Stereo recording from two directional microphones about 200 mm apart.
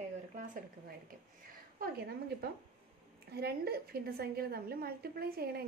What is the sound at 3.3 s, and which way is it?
A woman's voice, 50° right (ahead or behind).